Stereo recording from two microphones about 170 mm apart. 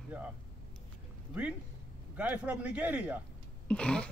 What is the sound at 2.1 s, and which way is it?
Speech, 10° right (ahead or behind).